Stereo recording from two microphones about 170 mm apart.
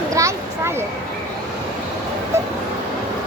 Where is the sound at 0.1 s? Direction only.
15° right (ahead or behind).